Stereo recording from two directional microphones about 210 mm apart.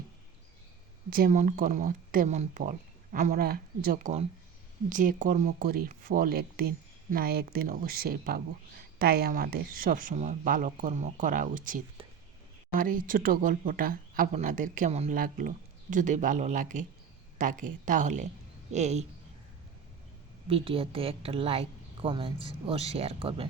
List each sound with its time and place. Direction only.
1.1 s speech: 40° right (ahead or behind)
12.0 s whispering: 25° right (ahead or behind)
12.7 s speech: 40° right (ahead or behind)
20.5 s a woman's voice: 25° right (ahead or behind)